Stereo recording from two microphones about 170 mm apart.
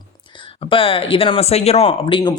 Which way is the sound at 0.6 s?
30° left (ahead or behind).